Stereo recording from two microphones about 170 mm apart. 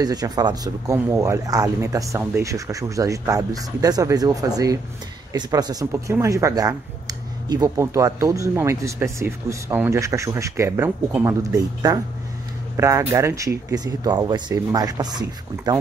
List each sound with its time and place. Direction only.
0.0 s speech: 25° right (ahead or behind)